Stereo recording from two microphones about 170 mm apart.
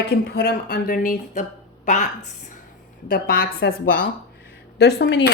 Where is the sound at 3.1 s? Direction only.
60° left (ahead or behind).